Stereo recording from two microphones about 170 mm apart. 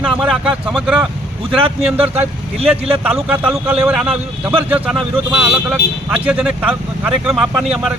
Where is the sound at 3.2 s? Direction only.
5° right (ahead or behind).